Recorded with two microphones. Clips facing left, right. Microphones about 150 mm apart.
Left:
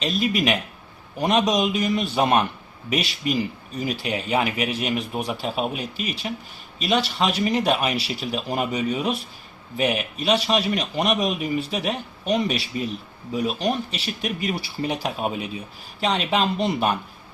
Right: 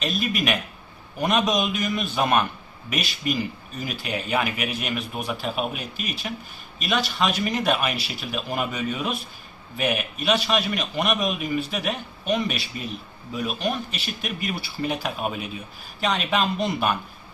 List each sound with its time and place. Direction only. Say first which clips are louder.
0.0 s a man's voice: left 3 dB; 25° left (ahead or behind)